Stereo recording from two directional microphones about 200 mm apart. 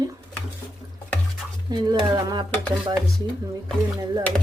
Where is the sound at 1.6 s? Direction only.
20° right (ahead or behind).